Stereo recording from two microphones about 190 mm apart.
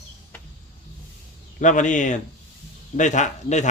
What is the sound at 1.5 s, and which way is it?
Speech, 40° left (ahead or behind).